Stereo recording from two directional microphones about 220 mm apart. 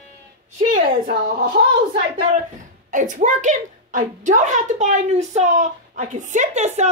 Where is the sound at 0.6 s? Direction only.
40° right (ahead or behind).